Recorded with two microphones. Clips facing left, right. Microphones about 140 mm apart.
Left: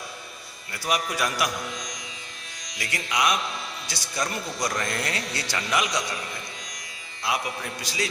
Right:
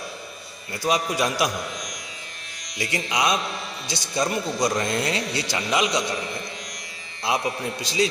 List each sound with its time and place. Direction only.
0.7 s a man's voice: 25° right (ahead or behind)
2.7 s a man's voice: 25° right (ahead or behind)
7.3 s a man's voice: 25° right (ahead or behind)